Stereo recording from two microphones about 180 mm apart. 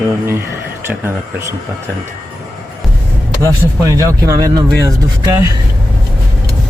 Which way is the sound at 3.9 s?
20° right (ahead or behind).